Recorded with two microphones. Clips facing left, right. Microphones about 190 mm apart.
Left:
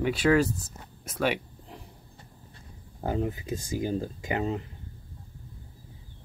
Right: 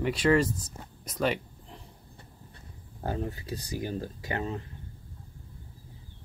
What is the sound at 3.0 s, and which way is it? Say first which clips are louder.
Speech: left 4 dB; 15° left (ahead or behind).